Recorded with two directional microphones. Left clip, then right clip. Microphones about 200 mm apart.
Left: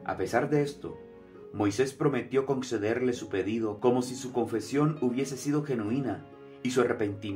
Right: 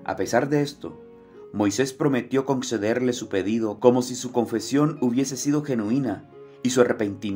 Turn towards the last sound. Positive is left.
turn(degrees=-40)  # may be behind; listen again after turning